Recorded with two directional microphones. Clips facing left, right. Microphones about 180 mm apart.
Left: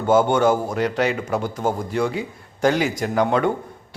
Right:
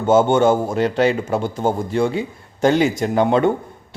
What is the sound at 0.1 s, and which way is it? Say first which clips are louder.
A man's voice: right 3 dB; 25° right (ahead or behind).